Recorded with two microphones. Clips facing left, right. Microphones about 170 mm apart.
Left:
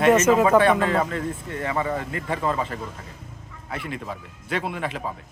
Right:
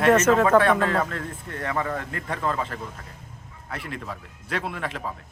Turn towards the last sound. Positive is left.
turn(degrees=5)  # may be behind; listen again after turning